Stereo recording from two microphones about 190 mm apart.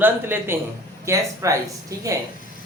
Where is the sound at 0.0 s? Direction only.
10° right (ahead or behind).